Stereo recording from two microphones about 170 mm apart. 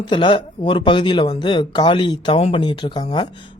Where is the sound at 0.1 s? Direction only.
30° left (ahead or behind).